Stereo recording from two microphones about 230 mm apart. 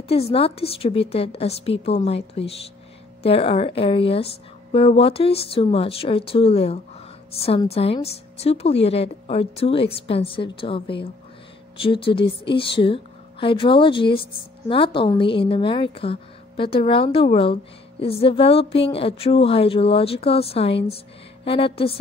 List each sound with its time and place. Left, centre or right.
0.1 s a woman's voice: left